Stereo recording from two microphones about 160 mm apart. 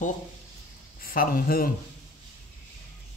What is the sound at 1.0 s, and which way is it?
Speech, 65° left (ahead or behind).